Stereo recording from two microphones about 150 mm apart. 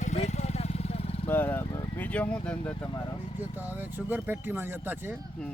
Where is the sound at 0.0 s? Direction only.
50° left (ahead or behind).